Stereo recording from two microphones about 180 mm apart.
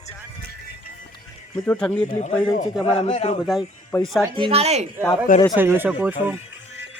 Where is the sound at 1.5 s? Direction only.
10° left (ahead or behind).